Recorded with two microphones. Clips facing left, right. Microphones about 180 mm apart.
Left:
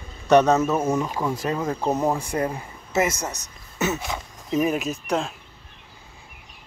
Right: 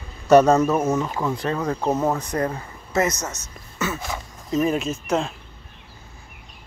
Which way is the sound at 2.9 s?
25° left (ahead or behind).